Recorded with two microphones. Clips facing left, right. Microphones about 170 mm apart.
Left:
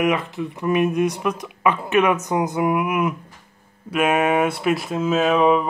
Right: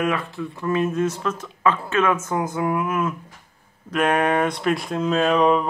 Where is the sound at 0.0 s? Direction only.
20° left (ahead or behind).